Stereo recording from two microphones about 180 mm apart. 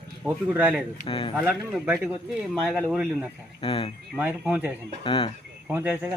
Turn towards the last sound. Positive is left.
turn(degrees=-10)  # may be behind; listen again after turning